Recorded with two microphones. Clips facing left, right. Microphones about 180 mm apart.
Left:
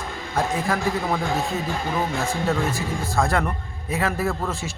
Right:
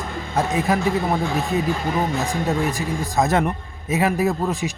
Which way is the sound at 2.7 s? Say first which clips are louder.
Right 2 dB; 20° right (ahead or behind).